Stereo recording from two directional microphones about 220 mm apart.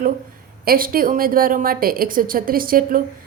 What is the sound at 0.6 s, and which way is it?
A woman's voice, 40° right (ahead or behind).